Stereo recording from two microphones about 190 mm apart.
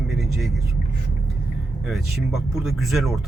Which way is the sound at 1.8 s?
Centre (ahead or behind).